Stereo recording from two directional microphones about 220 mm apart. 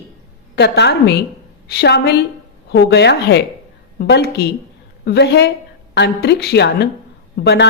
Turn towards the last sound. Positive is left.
turn(degrees=50)  # may be behind; listen again after turning